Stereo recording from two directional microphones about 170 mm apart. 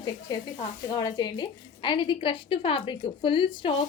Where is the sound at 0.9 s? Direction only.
25° left (ahead or behind).